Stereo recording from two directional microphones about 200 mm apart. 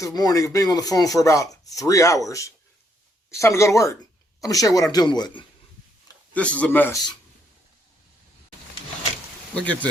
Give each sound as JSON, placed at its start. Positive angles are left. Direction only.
{"t": 0.0, "sound": "speech", "side_deg": 20}
{"t": 6.3, "sound": "speech", "side_deg": 5}